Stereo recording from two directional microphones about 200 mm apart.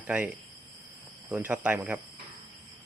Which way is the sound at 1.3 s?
10° right (ahead or behind).